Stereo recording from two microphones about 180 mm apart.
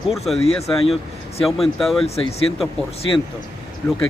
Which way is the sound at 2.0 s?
35° left (ahead or behind).